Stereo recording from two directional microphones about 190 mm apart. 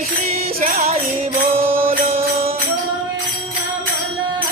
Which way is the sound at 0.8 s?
30° right (ahead or behind).